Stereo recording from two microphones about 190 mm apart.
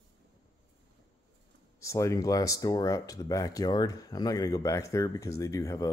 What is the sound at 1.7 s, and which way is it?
Speech, 15° left (ahead or behind).